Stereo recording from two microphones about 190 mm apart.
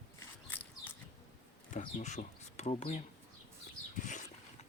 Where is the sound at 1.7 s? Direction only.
40° left (ahead or behind).